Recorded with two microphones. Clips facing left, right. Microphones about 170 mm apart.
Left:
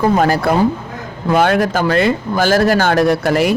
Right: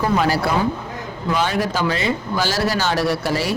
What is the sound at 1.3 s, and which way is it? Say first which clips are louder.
Speech: left 7 dB; 55° left (ahead or behind).